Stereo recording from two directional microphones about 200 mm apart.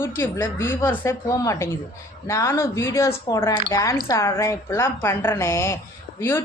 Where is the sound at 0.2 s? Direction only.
10° left (ahead or behind).